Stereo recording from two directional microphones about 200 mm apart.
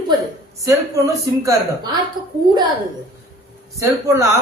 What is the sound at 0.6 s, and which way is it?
A woman's voice, 15° right (ahead or behind).